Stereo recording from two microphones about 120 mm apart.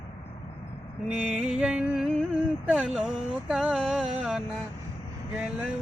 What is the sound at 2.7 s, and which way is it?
Vehicle, 5° right (ahead or behind).